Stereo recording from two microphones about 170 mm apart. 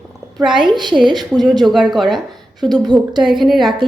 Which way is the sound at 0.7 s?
25° right (ahead or behind).